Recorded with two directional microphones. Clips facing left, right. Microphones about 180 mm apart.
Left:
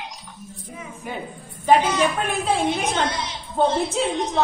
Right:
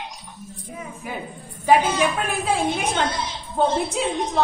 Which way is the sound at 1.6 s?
10° right (ahead or behind).